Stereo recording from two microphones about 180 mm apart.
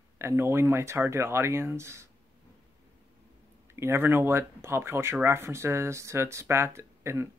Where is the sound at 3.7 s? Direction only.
15° right (ahead or behind).